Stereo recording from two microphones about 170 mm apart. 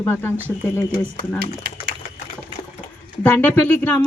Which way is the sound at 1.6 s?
70° right (ahead or behind).